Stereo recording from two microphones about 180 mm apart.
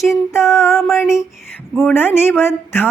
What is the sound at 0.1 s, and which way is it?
Speech, 15° left (ahead or behind).